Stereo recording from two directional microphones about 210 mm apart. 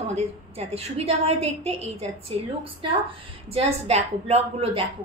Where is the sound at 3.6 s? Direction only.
30° right (ahead or behind).